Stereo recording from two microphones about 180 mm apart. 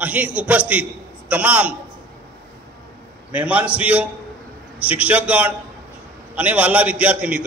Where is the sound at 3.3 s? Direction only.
10° right (ahead or behind).